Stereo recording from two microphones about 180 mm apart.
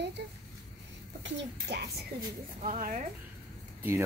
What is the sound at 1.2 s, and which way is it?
Speech, 70° right (ahead or behind).